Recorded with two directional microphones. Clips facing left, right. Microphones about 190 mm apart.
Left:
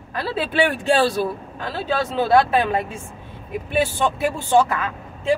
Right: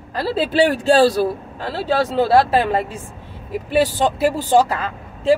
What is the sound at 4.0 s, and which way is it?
Speech, 35° right (ahead or behind).